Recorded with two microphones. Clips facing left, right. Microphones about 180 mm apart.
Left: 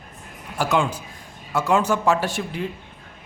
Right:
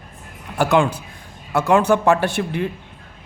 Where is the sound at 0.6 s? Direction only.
60° right (ahead or behind).